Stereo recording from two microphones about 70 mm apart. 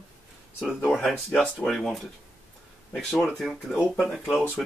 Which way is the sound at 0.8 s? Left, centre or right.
Centre.